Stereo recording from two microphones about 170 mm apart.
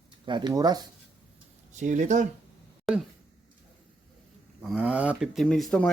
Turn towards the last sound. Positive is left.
turn(degrees=5)  # may be behind; listen again after turning